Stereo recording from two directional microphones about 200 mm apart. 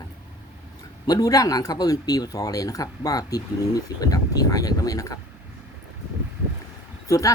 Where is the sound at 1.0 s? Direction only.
20° left (ahead or behind).